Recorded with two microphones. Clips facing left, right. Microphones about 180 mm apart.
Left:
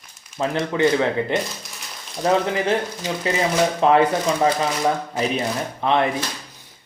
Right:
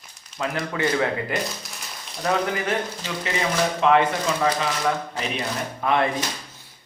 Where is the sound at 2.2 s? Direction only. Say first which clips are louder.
Left 4 dB; 25° left (ahead or behind).